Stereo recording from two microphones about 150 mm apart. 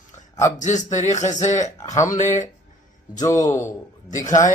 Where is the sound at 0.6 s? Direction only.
55° left (ahead or behind).